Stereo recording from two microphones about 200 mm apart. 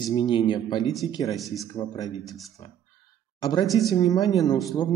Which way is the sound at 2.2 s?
Centre (ahead or behind).